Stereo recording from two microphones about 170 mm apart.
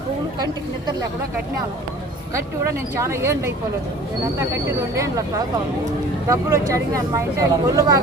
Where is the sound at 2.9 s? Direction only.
15° right (ahead or behind).